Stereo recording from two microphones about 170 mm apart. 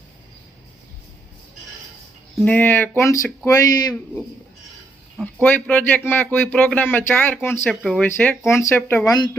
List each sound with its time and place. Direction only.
2.4 s speech: 10° left (ahead or behind)
5.2 s speech: 10° left (ahead or behind)
9.0 s speech: 20° left (ahead or behind)